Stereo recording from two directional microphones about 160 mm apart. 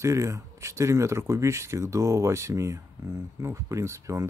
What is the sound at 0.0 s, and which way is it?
Speech, 20° right (ahead or behind).